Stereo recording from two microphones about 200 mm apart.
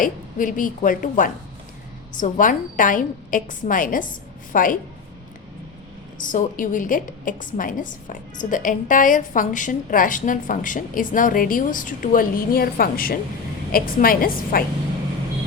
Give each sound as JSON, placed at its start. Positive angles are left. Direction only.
{"t": 0.0, "sound": "a woman's voice", "side_deg": 40}
{"t": 6.1, "sound": "a woman's voice", "side_deg": 40}